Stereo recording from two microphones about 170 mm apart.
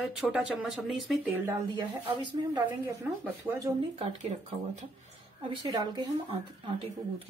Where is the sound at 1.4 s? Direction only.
20° right (ahead or behind).